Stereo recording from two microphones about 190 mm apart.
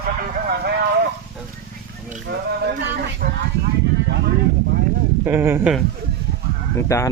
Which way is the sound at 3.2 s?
50° right (ahead or behind).